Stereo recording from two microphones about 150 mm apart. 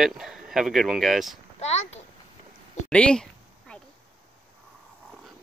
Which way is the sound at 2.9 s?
5° left (ahead or behind).